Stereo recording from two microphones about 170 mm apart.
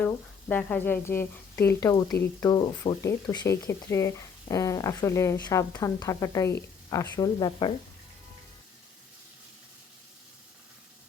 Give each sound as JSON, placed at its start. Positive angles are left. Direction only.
{"t": 0.0, "sound": "speech", "side_deg": 10}